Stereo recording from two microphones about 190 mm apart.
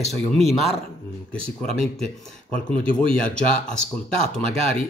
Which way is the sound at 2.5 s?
30° right (ahead or behind).